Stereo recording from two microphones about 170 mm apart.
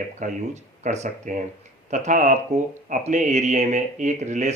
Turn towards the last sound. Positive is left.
turn(degrees=-45)  # may be behind; listen again after turning